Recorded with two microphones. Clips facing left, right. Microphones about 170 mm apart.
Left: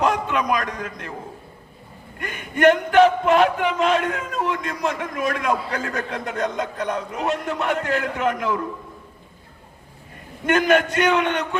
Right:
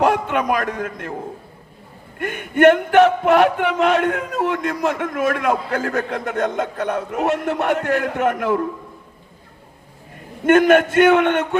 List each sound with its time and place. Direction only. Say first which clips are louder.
0.0 s a man's voice: right 3 dB; 55° right (ahead or behind)
2.1 s a man's voice: right 7 dB; 55° right (ahead or behind)
10.4 s a man's voice: right 5 dB; 50° right (ahead or behind)